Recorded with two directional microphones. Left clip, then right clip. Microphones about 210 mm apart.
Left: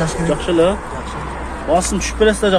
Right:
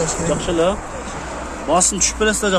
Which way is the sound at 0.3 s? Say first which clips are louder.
Left 4 dB; 15° right (ahead or behind).